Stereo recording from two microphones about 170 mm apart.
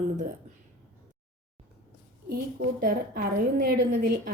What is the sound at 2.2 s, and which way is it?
A woman's voice, 60° right (ahead or behind).